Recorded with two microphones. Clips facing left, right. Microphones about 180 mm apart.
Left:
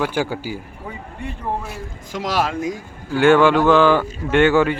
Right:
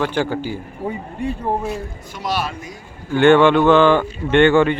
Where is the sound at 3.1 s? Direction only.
Centre (ahead or behind).